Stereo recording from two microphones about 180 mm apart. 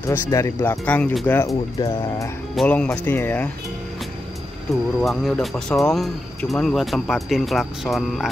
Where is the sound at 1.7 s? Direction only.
20° left (ahead or behind).